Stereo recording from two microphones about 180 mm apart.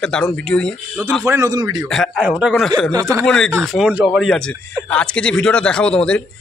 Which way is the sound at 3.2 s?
5° left (ahead or behind).